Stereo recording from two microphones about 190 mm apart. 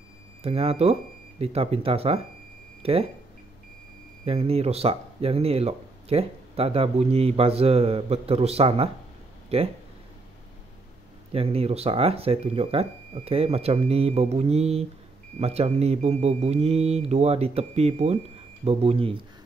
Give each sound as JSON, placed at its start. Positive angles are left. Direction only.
{"t": 0.4, "sound": "speech", "side_deg": -30}
{"t": 4.2, "sound": "speech", "side_deg": -30}
{"t": 11.3, "sound": "speech", "side_deg": -30}